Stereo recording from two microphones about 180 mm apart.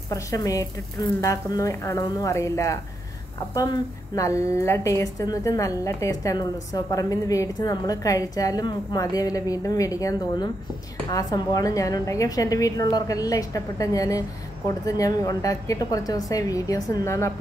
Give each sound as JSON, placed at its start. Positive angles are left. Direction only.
{"t": 0.1, "sound": "a woman's voice", "side_deg": 20}